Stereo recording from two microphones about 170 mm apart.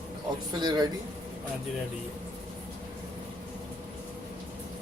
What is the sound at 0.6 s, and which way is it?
Speech, 25° right (ahead or behind).